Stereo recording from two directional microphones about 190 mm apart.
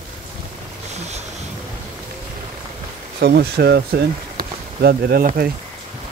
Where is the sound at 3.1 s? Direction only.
55° right (ahead or behind).